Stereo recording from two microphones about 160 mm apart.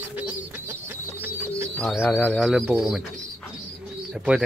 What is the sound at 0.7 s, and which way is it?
Bird, 15° right (ahead or behind).